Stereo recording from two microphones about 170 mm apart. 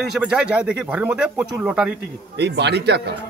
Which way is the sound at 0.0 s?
5° right (ahead or behind).